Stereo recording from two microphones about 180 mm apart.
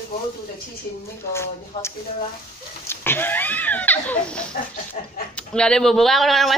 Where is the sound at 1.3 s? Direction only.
15° left (ahead or behind).